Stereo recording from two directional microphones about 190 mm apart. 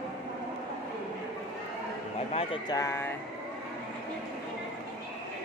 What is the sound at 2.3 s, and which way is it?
Speech, 25° left (ahead or behind).